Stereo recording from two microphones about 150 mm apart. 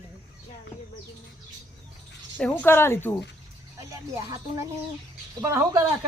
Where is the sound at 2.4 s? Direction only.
10° left (ahead or behind).